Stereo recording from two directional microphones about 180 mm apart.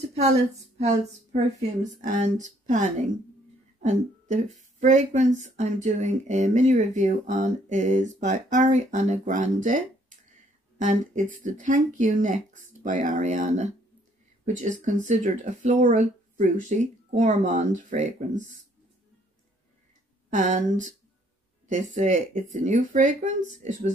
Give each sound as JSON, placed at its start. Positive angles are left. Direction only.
{"t": 1.3, "sound": "speech", "side_deg": -45}
{"t": 10.8, "sound": "speech", "side_deg": -45}
{"t": 20.3, "sound": "speech", "side_deg": -45}